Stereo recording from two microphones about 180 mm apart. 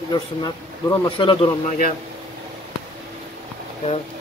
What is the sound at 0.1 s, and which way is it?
A man's voice, 20° left (ahead or behind).